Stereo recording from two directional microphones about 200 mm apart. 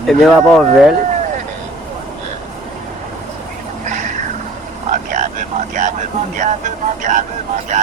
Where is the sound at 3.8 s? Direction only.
35° right (ahead or behind).